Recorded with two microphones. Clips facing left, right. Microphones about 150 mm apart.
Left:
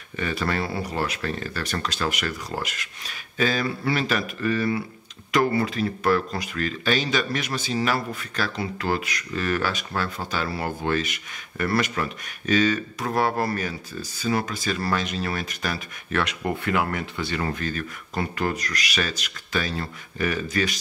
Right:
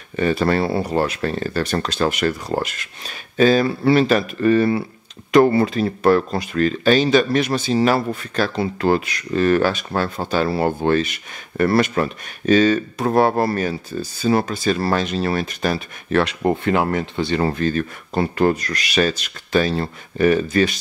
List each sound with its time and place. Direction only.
0.1 s speech: 35° right (ahead or behind)